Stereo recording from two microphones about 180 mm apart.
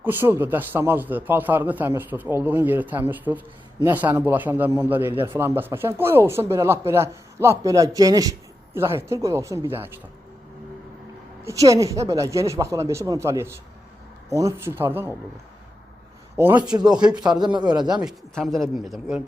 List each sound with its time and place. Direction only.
0.0 s speech: 10° right (ahead or behind)
11.4 s speech: 20° right (ahead or behind)
17.2 s a man's voice: 25° right (ahead or behind)
18.0 s speech: centre (ahead or behind)